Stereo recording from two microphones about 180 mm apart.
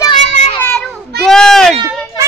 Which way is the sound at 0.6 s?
5° left (ahead or behind).